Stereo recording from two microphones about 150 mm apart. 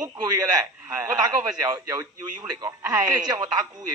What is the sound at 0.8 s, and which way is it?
Speech, 20° right (ahead or behind).